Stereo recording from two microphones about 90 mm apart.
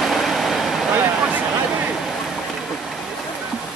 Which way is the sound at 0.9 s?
15° right (ahead or behind).